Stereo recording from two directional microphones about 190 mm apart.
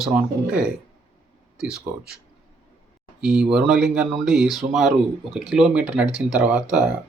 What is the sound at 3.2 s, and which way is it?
Speech, 5° right (ahead or behind).